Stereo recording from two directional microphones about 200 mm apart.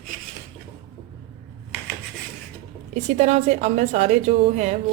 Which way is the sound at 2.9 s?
35° right (ahead or behind).